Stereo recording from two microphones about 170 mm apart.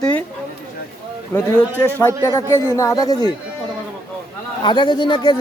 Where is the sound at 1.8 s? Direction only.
10° left (ahead or behind).